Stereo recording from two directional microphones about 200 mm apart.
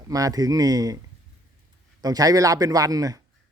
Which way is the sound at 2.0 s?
20° right (ahead or behind).